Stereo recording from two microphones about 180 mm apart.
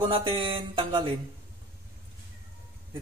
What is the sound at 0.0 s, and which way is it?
A man's voice, 30° right (ahead or behind).